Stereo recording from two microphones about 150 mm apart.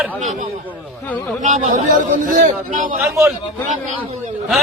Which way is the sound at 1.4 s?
55° right (ahead or behind).